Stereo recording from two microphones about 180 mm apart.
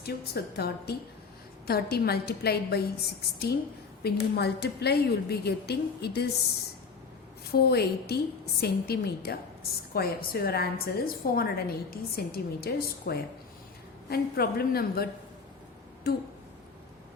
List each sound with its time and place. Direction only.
0.0 s a woman's voice: 60° left (ahead or behind)
7.5 s a woman's voice: 60° left (ahead or behind)